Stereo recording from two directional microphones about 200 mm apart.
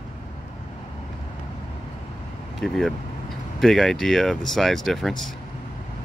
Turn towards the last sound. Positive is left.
turn(degrees=0)  # may be behind; listen again after turning